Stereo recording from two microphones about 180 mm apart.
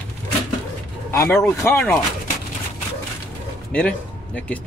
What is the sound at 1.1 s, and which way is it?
Speech, 15° left (ahead or behind).